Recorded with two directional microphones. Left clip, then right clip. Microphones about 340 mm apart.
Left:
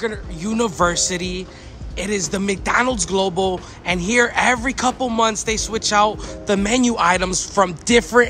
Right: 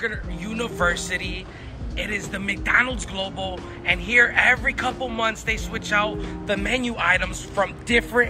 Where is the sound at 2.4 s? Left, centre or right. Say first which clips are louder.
Even; centre.